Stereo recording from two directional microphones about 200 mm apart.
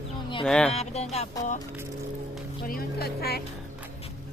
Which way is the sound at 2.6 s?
50° left (ahead or behind).